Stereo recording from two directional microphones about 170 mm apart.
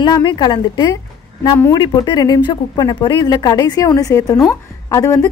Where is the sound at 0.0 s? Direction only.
25° left (ahead or behind).